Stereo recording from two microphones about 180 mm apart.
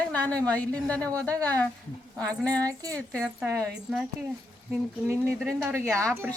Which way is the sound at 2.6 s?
20° right (ahead or behind).